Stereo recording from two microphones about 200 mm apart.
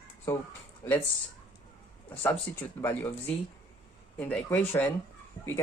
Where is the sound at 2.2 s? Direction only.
10° left (ahead or behind).